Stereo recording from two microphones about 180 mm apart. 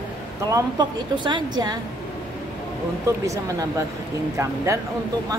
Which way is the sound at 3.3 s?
15° right (ahead or behind).